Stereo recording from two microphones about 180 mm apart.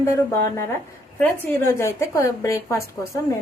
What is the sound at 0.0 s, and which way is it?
A woman's voice, 15° left (ahead or behind).